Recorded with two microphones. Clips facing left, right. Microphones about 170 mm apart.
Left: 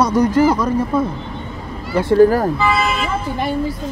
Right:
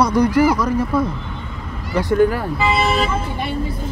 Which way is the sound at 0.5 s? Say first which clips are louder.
Left 1 dB; 25° left (ahead or behind).